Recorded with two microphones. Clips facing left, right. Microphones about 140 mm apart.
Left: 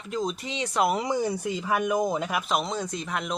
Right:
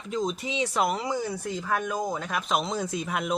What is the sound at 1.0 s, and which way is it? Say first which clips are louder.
Speech: left 3 dB; 20° left (ahead or behind).